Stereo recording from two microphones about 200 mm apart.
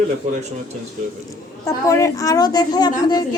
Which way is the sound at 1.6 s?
15° left (ahead or behind).